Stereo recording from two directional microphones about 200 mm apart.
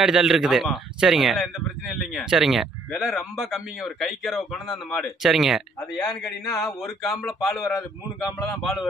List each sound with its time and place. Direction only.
0.0 s speech: 5° right (ahead or behind)
7.6 s a man's voice: 15° left (ahead or behind)
8.4 s speech: centre (ahead or behind)